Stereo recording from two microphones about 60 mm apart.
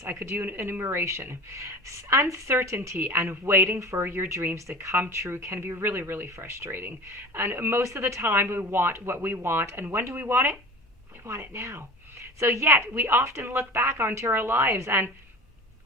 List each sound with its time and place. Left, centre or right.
0.0 s a woman's voice: right
1.5 s a woman's voice: right
5.1 s a woman's voice: right
7.9 s a woman's voice: right
8.3 s speech: right
11.3 s a woman's voice: right